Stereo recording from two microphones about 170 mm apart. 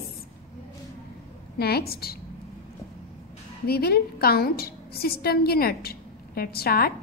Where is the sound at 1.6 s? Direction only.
65° left (ahead or behind).